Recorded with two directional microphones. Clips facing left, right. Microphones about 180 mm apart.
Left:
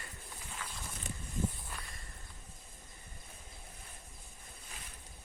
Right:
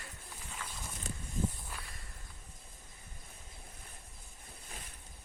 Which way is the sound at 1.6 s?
Centre (ahead or behind).